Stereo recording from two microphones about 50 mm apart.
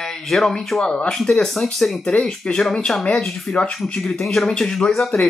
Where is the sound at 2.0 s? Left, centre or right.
Centre.